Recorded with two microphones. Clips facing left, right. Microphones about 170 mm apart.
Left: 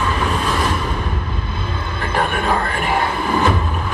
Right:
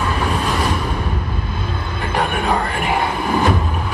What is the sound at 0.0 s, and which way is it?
Music, 10° right (ahead or behind).